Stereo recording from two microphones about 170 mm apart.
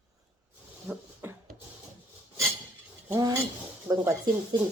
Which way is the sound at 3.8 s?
15° right (ahead or behind).